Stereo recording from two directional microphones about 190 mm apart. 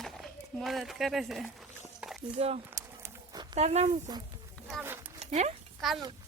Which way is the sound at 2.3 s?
35° right (ahead or behind).